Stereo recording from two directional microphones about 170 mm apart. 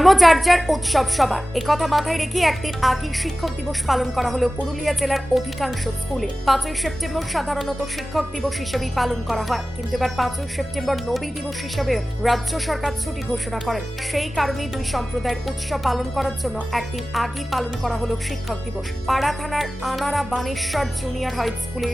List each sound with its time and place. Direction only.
0.0 s a woman's voice: centre (ahead or behind)